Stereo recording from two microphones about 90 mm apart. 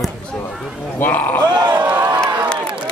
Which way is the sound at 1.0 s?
20° left (ahead or behind).